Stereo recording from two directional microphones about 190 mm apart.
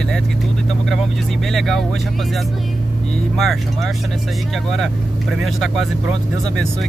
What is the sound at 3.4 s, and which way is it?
Speech, centre (ahead or behind).